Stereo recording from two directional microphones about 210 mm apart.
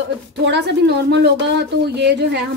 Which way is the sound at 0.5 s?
55° right (ahead or behind).